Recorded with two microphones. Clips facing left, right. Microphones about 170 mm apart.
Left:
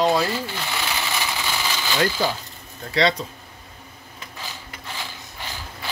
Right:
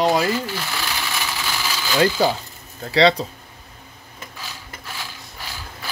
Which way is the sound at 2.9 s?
30° right (ahead or behind).